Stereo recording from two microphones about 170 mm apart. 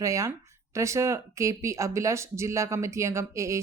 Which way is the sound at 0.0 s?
20° right (ahead or behind).